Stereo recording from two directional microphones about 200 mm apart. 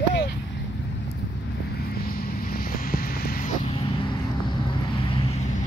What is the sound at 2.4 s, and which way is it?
Vehicle, 50° left (ahead or behind).